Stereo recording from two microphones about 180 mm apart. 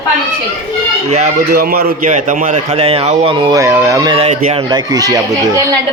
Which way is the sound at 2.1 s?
45° right (ahead or behind).